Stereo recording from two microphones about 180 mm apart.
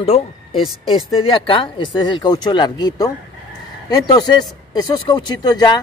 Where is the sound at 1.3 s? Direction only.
30° left (ahead or behind).